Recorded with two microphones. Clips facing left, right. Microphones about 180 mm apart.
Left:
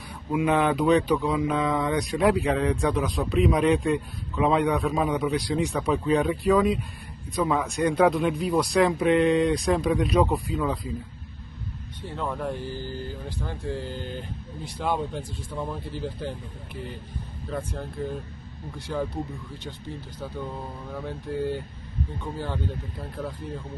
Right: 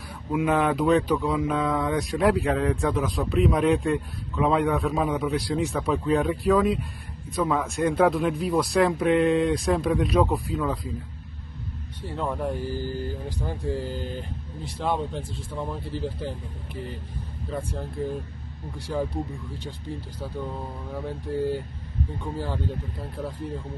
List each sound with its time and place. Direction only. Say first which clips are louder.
0.3 s speech: even; centre (ahead or behind)
12.0 s speech: right 2 dB; 5° right (ahead or behind)
12.5 s speech: right 3 dB; 45° right (ahead or behind)
13.4 s speech: right 3 dB; 10° right (ahead or behind)
17.6 s speech: right 1 dB; 10° right (ahead or behind)
20.2 s speech: even; 10° right (ahead or behind)
22.2 s speech: right 1 dB; 5° right (ahead or behind)